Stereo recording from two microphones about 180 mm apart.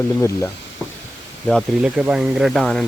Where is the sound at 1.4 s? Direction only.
Centre (ahead or behind).